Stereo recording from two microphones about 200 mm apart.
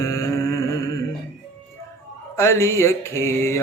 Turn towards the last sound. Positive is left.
turn(degrees=15)  # may be behind; listen again after turning